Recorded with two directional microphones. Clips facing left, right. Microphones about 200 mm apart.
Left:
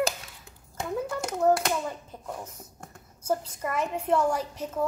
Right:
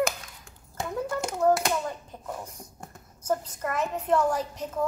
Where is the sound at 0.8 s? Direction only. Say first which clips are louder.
Even; centre (ahead or behind).